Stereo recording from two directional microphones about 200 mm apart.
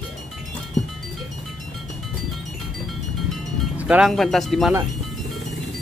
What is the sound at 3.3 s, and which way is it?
Music, 5° right (ahead or behind).